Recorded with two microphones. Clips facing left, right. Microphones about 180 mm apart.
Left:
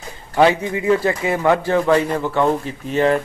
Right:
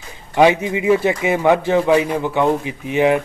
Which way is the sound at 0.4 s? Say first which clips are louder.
Right 2 dB; 15° right (ahead or behind).